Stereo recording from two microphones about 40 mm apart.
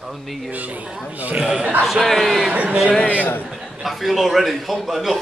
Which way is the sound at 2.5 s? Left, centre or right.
Right.